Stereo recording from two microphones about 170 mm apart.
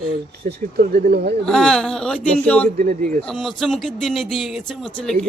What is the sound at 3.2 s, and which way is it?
Speech, 5° left (ahead or behind).